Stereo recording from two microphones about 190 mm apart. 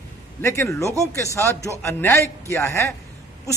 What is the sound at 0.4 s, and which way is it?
A man's voice, 15° left (ahead or behind).